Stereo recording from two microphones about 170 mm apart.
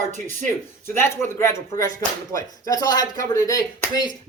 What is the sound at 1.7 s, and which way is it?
Speech, 55° right (ahead or behind).